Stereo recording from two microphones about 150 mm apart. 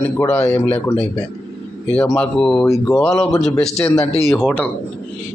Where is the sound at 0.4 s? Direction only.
20° left (ahead or behind).